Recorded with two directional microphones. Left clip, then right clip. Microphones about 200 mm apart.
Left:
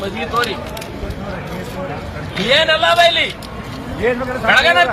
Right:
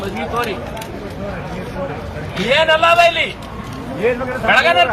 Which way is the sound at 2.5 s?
5° left (ahead or behind).